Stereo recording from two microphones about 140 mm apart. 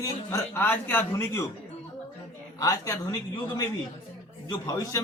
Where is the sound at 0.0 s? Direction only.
20° left (ahead or behind).